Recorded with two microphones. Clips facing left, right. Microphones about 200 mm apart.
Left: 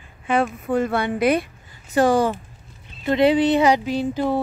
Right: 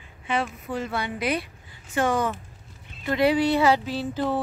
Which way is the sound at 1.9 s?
35° left (ahead or behind).